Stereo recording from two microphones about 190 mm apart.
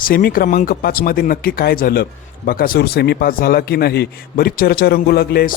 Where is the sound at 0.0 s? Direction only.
50° left (ahead or behind).